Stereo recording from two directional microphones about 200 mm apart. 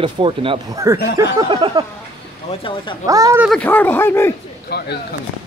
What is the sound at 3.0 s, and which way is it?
Speech, 15° right (ahead or behind).